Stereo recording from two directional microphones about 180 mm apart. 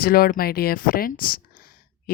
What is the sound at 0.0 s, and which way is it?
Speech, 55° left (ahead or behind).